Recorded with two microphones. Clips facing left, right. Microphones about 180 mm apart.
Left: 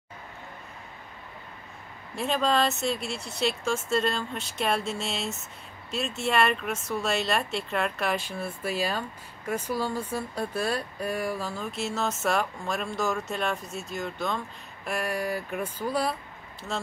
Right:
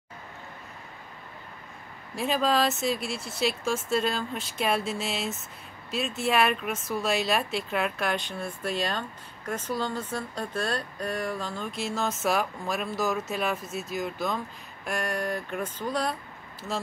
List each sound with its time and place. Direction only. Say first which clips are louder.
2.1 s speech: even; centre (ahead or behind)